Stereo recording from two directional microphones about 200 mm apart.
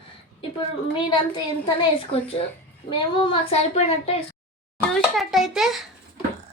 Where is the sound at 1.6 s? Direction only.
25° left (ahead or behind).